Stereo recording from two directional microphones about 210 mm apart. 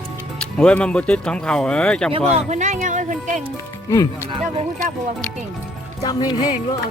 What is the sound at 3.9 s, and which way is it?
Speech, 15° left (ahead or behind).